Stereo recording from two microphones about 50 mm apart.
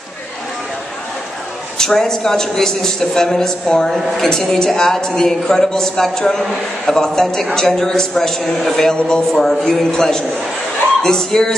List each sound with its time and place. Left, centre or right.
1.8 s a woman's voice: centre